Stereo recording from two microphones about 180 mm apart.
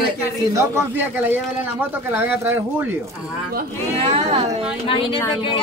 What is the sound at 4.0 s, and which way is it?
Speech, 30° right (ahead or behind).